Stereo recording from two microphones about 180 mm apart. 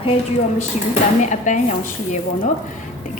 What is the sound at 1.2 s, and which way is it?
A woman's voice, 40° left (ahead or behind).